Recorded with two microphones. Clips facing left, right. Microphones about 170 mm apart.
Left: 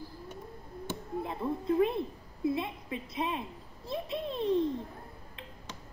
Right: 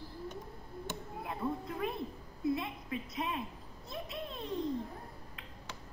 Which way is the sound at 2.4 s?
25° left (ahead or behind).